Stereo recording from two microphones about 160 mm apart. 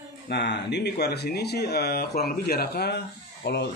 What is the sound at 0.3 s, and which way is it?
Speech, 90° left.